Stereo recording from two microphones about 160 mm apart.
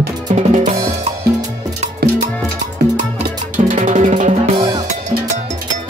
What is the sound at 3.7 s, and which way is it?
Music, 50° right (ahead or behind).